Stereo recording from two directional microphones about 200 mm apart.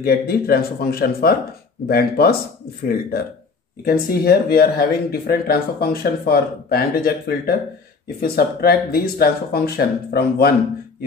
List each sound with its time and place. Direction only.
0.0 s speech: 50° left (ahead or behind)